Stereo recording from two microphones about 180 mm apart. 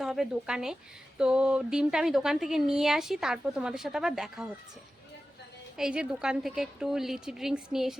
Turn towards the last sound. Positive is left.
turn(degrees=0)  # may be behind; listen again after turning